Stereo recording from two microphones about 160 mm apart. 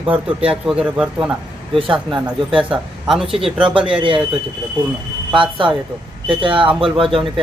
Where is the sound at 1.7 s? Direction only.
30° right (ahead or behind).